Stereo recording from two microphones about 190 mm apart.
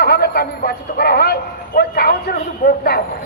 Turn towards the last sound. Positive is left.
turn(degrees=50)  # may be behind; listen again after turning